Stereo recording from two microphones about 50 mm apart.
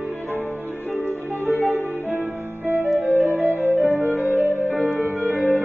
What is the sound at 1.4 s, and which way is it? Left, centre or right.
Music, left.